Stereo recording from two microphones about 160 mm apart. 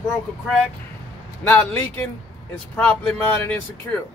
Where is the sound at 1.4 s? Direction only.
10° left (ahead or behind).